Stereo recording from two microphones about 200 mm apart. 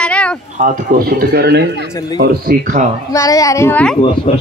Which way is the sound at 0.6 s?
45° right (ahead or behind).